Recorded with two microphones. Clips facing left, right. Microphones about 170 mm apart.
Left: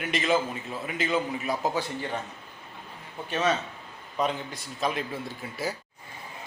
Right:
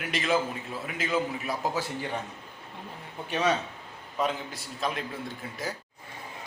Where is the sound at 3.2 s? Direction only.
10° right (ahead or behind).